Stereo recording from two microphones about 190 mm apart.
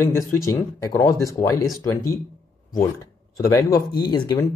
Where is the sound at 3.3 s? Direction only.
15° left (ahead or behind).